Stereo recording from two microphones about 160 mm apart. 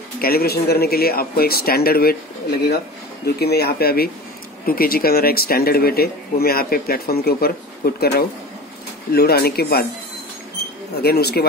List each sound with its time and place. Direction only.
0.2 s speech: 70° left (ahead or behind)
3.3 s speech: 90° left
11.0 s speech: 80° left